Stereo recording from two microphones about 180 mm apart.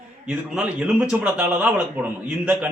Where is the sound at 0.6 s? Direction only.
5° right (ahead or behind).